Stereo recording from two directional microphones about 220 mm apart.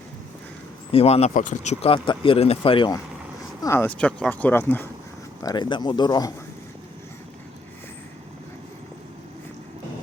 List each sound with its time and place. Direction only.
0.9 s speech: 25° left (ahead or behind)
3.6 s speech: 10° left (ahead or behind)
5.4 s speech: 20° left (ahead or behind)